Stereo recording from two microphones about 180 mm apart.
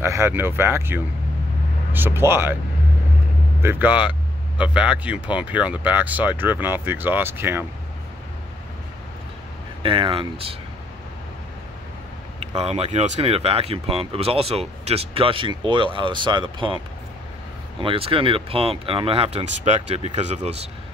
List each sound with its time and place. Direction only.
0.0 s speech: 15° right (ahead or behind)
3.6 s speech: 10° right (ahead or behind)
9.8 s speech: 30° right (ahead or behind)
12.4 s speech: 35° right (ahead or behind)
17.8 s speech: 30° right (ahead or behind)